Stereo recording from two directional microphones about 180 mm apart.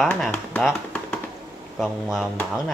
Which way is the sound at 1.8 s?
Centre (ahead or behind).